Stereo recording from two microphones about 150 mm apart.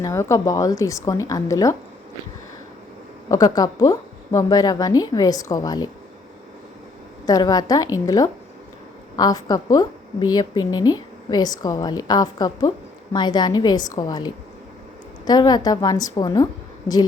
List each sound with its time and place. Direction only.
0.0 s a woman's voice: 20° left (ahead or behind)
3.2 s a woman's voice: 25° left (ahead or behind)
7.3 s a woman's voice: 25° left (ahead or behind)